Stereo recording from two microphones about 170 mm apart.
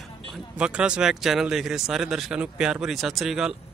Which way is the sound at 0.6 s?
5° right (ahead or behind).